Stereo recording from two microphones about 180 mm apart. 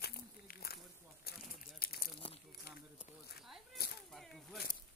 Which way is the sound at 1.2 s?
60° left (ahead or behind).